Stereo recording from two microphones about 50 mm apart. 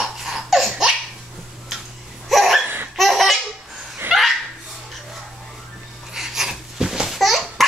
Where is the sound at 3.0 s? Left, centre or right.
Centre.